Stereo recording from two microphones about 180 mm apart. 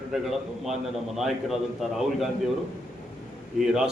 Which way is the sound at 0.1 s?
Centre (ahead or behind).